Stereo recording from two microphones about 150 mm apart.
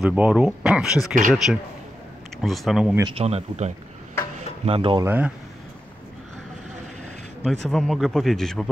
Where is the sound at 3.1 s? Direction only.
40° right (ahead or behind).